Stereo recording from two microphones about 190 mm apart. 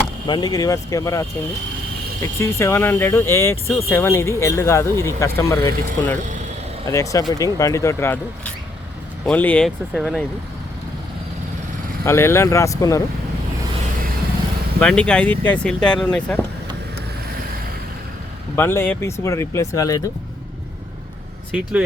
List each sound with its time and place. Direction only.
0.3 s speech: 20° left (ahead or behind); by 10.2 s centre (ahead or behind)
12.0 s speech: 15° left (ahead or behind)
14.8 s speech: 5° left (ahead or behind)
18.5 s speech: 10° left (ahead or behind)
21.5 s speech: 5° right (ahead or behind)